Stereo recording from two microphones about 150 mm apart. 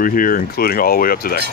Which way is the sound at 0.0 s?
70° left (ahead or behind).